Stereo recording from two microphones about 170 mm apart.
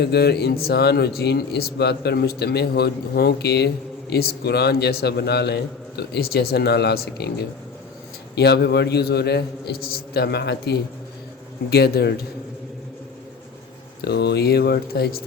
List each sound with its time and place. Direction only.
0.0 s speech: 75° left (ahead or behind)
8.4 s speech: 75° left (ahead or behind)
14.0 s speech: 75° left (ahead or behind)